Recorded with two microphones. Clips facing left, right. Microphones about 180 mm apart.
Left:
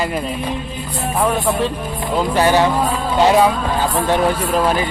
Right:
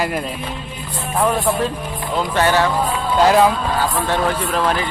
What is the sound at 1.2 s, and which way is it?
Speech, centre (ahead or behind).